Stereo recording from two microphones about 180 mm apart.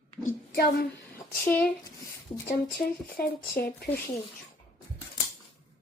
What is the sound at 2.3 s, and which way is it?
Speech, 25° left (ahead or behind).